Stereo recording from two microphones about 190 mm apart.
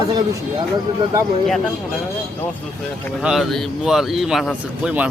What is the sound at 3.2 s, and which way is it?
Speech, centre (ahead or behind).